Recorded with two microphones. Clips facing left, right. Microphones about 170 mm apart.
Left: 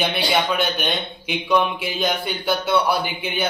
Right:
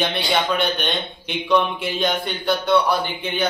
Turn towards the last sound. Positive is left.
turn(degrees=10)  # may be behind; listen again after turning